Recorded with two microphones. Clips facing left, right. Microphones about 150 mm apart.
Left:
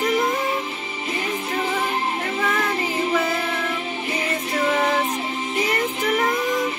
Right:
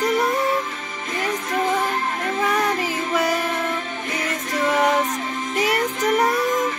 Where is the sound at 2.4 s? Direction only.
5° left (ahead or behind).